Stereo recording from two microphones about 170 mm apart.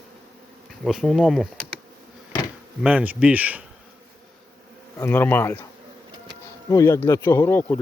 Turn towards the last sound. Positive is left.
turn(degrees=15)  # may be behind; listen again after turning